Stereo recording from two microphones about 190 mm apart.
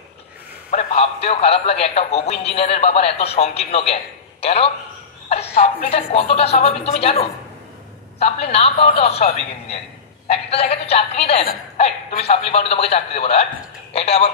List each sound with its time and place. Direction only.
0.7 s a man's voice: 35° left (ahead or behind)